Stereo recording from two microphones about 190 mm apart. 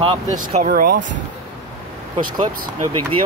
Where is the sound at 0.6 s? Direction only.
50° right (ahead or behind).